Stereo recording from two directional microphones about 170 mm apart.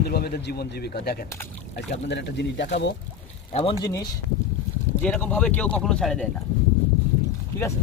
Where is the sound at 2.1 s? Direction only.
90° left.